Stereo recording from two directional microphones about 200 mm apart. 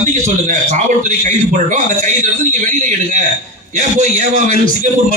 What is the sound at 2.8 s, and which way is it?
A man's voice, 40° right (ahead or behind).